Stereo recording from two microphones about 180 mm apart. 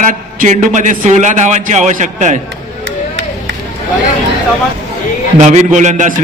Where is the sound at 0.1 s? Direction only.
45° right (ahead or behind).